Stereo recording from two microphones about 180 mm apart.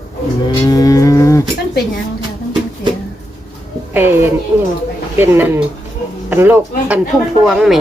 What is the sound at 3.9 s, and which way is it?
Speech, 10° right (ahead or behind).